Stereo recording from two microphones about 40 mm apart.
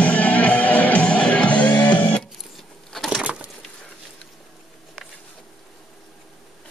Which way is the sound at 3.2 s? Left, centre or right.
Right.